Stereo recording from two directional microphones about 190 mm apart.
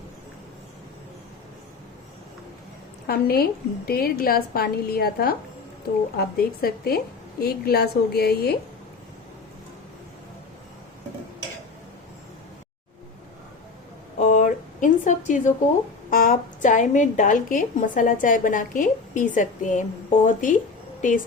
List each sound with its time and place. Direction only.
3.1 s a woman's voice: 55° left (ahead or behind)
14.2 s a sound: 45° left (ahead or behind)
16.0 s a woman's voice: 45° left (ahead or behind)